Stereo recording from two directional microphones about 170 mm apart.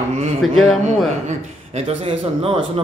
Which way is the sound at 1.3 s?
35° right (ahead or behind).